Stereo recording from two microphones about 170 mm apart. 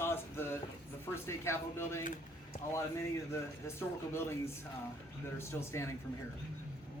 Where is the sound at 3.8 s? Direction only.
15° left (ahead or behind).